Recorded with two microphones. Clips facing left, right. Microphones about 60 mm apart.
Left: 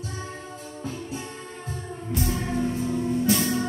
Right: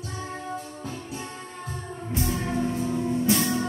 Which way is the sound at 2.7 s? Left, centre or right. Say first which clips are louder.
Even; centre.